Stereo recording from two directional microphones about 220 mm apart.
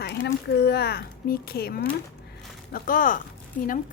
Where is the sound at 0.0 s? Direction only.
50° left (ahead or behind).